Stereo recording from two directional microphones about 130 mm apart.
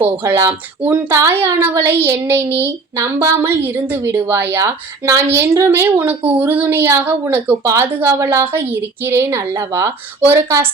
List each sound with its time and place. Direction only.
0.0 s a woman's voice: 20° right (ahead or behind)